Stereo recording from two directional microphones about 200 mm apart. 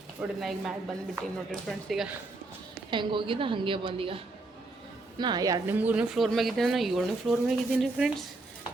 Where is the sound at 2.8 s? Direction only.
25° right (ahead or behind); by 8.2 s centre (ahead or behind).